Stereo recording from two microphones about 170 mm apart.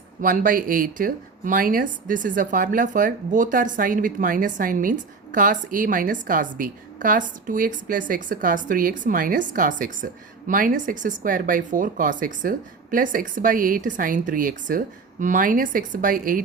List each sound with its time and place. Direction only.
0.2 s speech: 50° right (ahead or behind)